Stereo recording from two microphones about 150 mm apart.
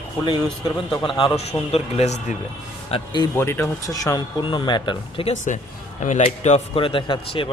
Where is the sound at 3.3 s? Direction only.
15° left (ahead or behind); by 5.3 s 35° left (ahead or behind).